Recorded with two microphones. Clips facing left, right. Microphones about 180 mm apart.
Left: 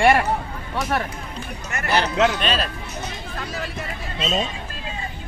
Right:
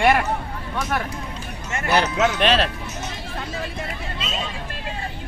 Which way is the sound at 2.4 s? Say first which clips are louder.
Right 5 dB; 75° right (ahead or behind).